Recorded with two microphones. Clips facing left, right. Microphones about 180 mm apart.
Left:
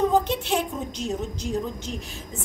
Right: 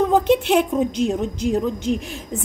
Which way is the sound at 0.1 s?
60° right (ahead or behind).